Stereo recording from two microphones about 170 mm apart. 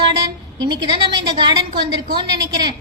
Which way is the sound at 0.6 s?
25° right (ahead or behind).